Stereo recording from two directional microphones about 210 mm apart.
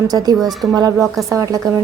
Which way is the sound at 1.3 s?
15° right (ahead or behind).